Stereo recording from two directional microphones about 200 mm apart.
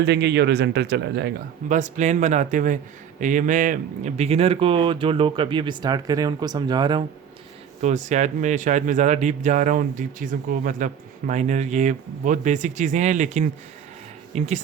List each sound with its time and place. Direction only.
0.0 s speech: 60° right (ahead or behind)
1.7 s a man's voice: 35° right (ahead or behind); by 7.0 s 20° right (ahead or behind)
7.8 s a man's voice: 35° right (ahead or behind)